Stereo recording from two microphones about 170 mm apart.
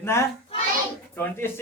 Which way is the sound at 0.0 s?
15° left (ahead or behind).